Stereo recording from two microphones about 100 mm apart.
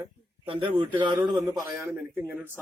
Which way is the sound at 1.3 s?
45° right (ahead or behind).